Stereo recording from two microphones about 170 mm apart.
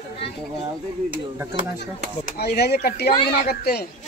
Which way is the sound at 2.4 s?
70° left (ahead or behind).